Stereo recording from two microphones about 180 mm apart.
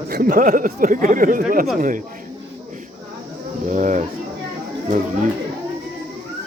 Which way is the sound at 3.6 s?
45° right (ahead or behind).